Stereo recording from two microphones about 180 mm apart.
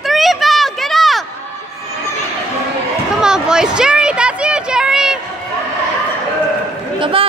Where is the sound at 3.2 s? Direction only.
5° right (ahead or behind).